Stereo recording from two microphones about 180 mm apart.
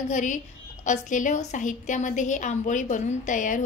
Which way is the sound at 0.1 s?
45° left (ahead or behind).